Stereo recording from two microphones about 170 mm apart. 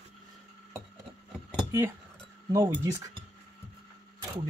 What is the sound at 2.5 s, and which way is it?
Speech, 20° right (ahead or behind).